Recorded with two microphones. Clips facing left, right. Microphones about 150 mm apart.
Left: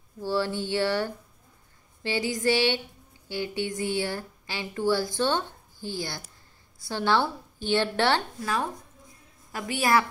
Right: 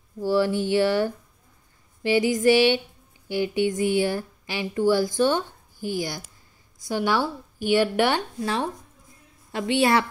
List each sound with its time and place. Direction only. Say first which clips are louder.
0.2 s a woman's voice: right 6 dB; 15° right (ahead or behind)
9.5 s a woman's voice: right 4 dB; 25° right (ahead or behind)